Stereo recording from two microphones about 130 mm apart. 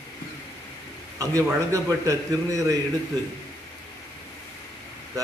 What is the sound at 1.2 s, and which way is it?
A man's voice, 25° right (ahead or behind).